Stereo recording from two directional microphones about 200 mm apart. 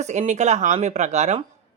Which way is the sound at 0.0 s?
35° right (ahead or behind).